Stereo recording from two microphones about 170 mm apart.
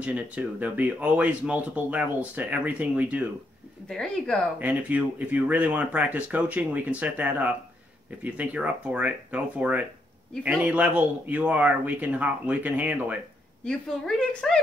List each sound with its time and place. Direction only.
0.0 s speech: 10° right (ahead or behind)
3.9 s a woman's voice: 5° left (ahead or behind)
4.6 s speech: 10° right (ahead or behind)
13.7 s a woman's voice: 5° left (ahead or behind)